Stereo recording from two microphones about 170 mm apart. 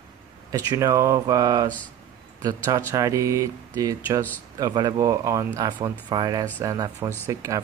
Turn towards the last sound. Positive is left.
turn(degrees=-20)  # may be behind; listen again after turning